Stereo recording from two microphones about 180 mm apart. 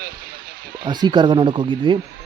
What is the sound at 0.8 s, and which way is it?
Speech, 25° right (ahead or behind).